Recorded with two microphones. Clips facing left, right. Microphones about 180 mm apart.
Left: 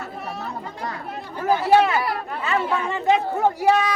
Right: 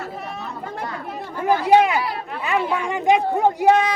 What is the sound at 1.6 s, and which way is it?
Chatter, 15° right (ahead or behind).